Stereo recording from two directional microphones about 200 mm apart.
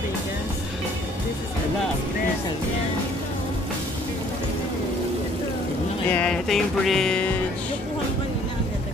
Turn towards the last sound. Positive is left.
turn(degrees=5)  # may be behind; listen again after turning